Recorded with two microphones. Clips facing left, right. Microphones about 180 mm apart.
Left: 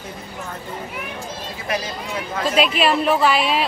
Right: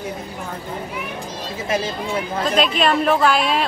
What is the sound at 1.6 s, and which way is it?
Speech, 25° right (ahead or behind).